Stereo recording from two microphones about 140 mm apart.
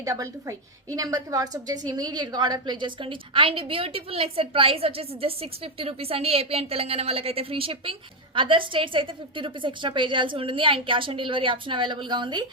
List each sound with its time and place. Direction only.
0.0 s a woman's voice: 20° right (ahead or behind)